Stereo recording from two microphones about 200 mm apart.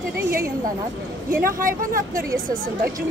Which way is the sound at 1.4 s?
45° right (ahead or behind).